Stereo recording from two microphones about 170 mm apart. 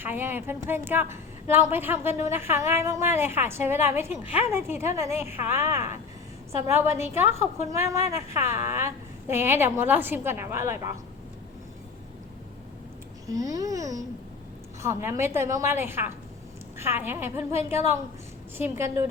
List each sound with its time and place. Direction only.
0.0 s a woman's voice: 10° right (ahead or behind)
7.0 s a woman's voice: 15° right (ahead or behind)
13.2 s a woman's voice: 20° right (ahead or behind)